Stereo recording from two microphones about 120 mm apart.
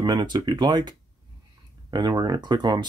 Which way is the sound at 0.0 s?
40° right (ahead or behind).